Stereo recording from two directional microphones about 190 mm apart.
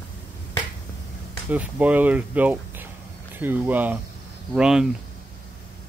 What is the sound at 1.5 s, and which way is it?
Speech, 10° right (ahead or behind).